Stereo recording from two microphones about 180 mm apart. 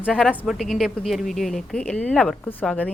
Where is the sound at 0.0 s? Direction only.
5° right (ahead or behind).